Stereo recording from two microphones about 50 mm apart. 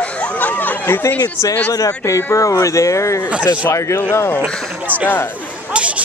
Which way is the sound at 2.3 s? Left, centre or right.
Left.